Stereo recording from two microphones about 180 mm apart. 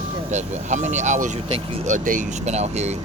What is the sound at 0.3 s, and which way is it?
Speech, 40° right (ahead or behind).